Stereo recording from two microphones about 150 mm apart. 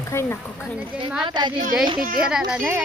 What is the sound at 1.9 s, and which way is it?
Speech, 65° right (ahead or behind).